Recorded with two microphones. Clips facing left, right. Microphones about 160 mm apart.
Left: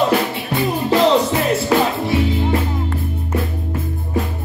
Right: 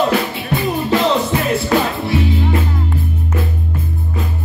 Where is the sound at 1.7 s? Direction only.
5° left (ahead or behind).